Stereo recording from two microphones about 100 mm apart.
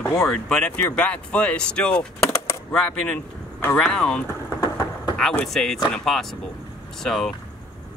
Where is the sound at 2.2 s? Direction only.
30° left (ahead or behind).